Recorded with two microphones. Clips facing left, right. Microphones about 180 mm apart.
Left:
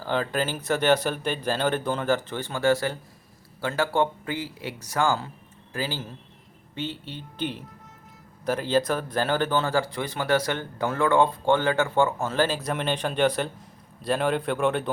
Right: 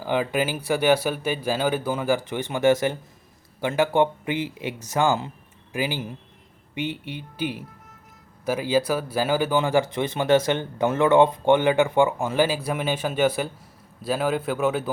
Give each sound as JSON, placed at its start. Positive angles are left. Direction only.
{"t": 0.0, "sound": "a man's voice", "side_deg": -10}